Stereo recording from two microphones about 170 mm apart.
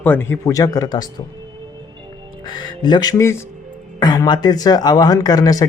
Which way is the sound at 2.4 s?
25° left (ahead or behind).